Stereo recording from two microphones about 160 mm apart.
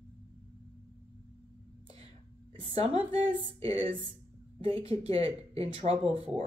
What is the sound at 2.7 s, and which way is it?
Speech, 40° right (ahead or behind).